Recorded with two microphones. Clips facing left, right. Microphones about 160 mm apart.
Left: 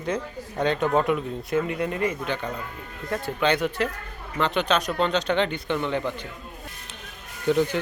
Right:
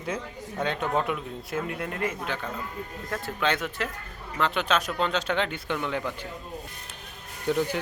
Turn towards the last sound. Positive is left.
turn(degrees=-10)  # may be behind; listen again after turning